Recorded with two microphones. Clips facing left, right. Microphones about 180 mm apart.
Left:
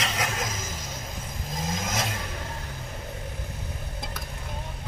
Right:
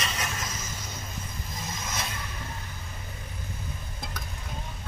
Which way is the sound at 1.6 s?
90° left.